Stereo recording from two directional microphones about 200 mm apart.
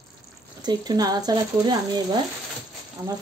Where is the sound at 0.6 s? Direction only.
20° right (ahead or behind).